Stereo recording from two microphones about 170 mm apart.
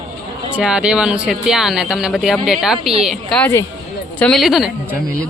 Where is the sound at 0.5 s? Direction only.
5° right (ahead or behind).